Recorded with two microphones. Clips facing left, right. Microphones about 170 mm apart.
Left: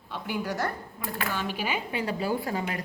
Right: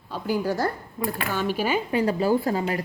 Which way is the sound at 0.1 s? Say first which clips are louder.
Right 6 dB; 35° right (ahead or behind).